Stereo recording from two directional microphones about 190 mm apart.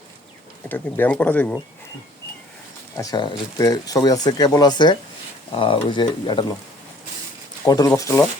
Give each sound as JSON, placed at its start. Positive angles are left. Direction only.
{"t": 0.7, "sound": "speech", "side_deg": 10}
{"t": 3.0, "sound": "speech", "side_deg": 20}
{"t": 7.6, "sound": "speech", "side_deg": 15}